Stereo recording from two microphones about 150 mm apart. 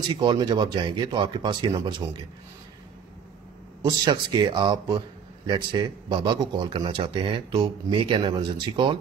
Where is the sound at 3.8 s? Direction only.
30° right (ahead or behind).